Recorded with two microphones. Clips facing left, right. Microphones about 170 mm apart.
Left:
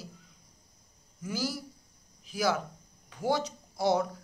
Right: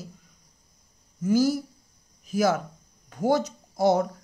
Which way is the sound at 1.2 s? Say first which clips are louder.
Right 12 dB; 45° right (ahead or behind).